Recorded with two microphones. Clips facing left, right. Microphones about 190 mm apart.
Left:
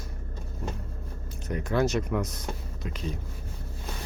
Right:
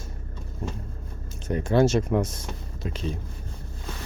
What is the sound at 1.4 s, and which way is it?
Speech, 30° right (ahead or behind).